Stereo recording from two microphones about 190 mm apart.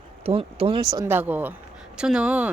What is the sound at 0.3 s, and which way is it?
Speech, 30° right (ahead or behind).